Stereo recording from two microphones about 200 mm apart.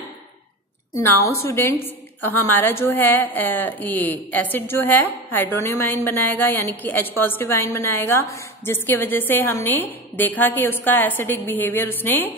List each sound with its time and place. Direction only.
0.9 s a woman's voice: 15° left (ahead or behind)